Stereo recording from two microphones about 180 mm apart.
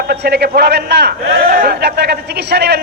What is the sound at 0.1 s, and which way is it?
A man's voice, 65° right (ahead or behind).